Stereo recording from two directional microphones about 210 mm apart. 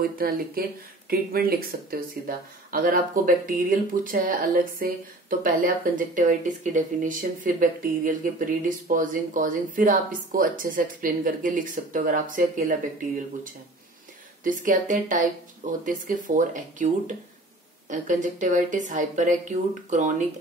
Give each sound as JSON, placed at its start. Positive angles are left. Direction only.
{"t": 0.0, "sound": "speech", "side_deg": -45}
{"t": 14.4, "sound": "speech", "side_deg": -40}